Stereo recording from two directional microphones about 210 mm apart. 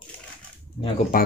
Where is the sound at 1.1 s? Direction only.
40° left (ahead or behind).